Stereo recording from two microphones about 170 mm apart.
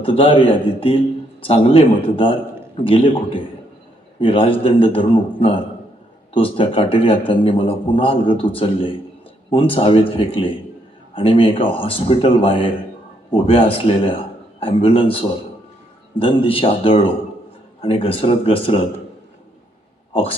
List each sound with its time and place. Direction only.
0.0 s a man's voice: 30° left (ahead or behind)